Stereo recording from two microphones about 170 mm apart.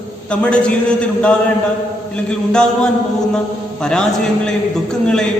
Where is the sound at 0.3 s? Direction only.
5° left (ahead or behind).